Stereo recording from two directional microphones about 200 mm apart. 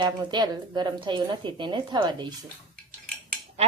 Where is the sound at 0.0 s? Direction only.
20° right (ahead or behind).